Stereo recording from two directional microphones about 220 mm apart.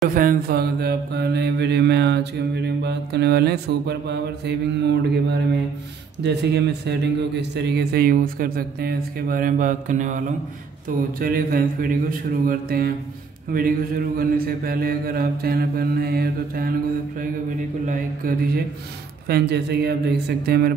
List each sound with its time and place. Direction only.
0.1 s mantra: 40° right (ahead or behind)
6.2 s a man's voice: 50° right (ahead or behind)
11.1 s a man's voice: 40° right (ahead or behind)
17.8 s a man's voice: 40° right (ahead or behind)